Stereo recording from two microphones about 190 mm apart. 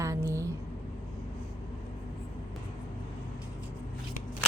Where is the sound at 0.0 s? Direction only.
15° right (ahead or behind).